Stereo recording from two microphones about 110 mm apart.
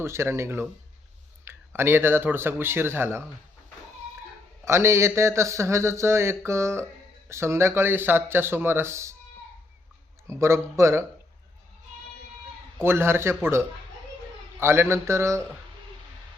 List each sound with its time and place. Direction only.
0.0 s speech: 25° right (ahead or behind)
4.6 s speech: 25° right (ahead or behind)
10.2 s speech: 25° right (ahead or behind)
12.8 s speech: 20° right (ahead or behind)